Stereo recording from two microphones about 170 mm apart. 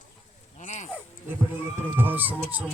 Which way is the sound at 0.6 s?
45° left (ahead or behind).